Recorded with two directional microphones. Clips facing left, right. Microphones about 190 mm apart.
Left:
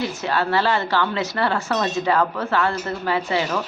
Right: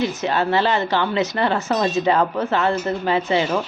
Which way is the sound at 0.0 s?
20° right (ahead or behind).